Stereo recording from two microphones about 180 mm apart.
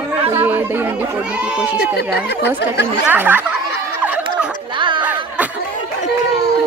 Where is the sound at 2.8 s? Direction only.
10° right (ahead or behind).